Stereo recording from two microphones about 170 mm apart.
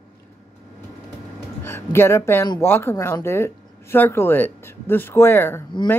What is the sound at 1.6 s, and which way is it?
A woman's voice, 15° left (ahead or behind).